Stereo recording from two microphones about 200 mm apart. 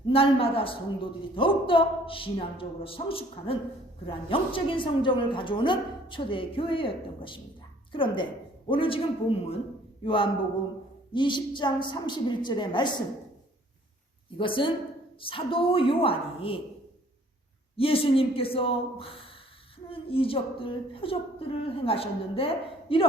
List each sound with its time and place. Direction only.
0.1 s a woman's voice: 30° left (ahead or behind)
14.3 s a woman's voice: 25° left (ahead or behind)
17.7 s a woman's voice: 30° left (ahead or behind)